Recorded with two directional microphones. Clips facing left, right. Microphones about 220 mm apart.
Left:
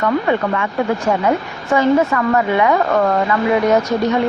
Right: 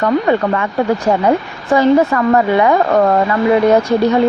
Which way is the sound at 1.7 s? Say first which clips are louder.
Right 3 dB; 35° right (ahead or behind).